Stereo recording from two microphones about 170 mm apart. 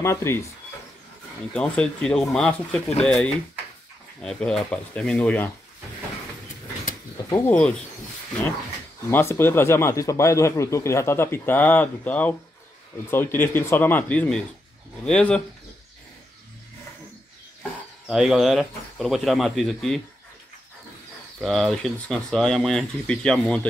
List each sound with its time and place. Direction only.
0.0 s a man's voice: 15° left (ahead or behind)
1.5 s speech: 5° left (ahead or behind)
7.2 s a man's voice: 15° left (ahead or behind)
9.1 s a man's voice: 15° left (ahead or behind)
18.0 s speech: 5° right (ahead or behind)
21.4 s speech: centre (ahead or behind)